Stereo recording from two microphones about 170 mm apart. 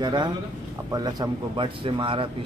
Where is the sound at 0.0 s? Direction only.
25° right (ahead or behind).